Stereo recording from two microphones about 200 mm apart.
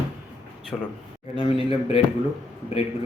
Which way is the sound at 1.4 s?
30° left (ahead or behind).